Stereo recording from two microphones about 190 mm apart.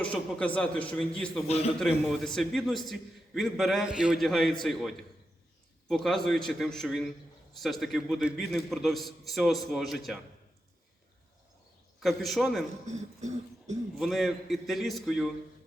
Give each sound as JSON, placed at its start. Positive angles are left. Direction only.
{"t": 0.0, "sound": "a man's voice", "side_deg": 5}
{"t": 1.5, "sound": "a man's voice", "side_deg": 30}
{"t": 1.8, "sound": "a man's voice", "side_deg": 0}
{"t": 11.9, "sound": "a man's voice", "side_deg": 0}
{"t": 12.9, "sound": "throat clearing", "side_deg": -40}
{"t": 14.0, "sound": "a man's voice", "side_deg": 0}